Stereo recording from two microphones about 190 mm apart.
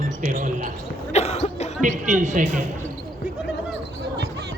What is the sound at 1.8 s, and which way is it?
Speech, 40° right (ahead or behind).